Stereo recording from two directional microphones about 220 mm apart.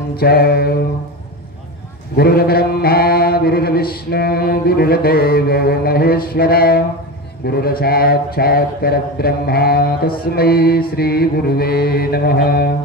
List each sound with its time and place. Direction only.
0.1 s mantra: 45° left (ahead or behind)
2.1 s mantra: 45° left (ahead or behind)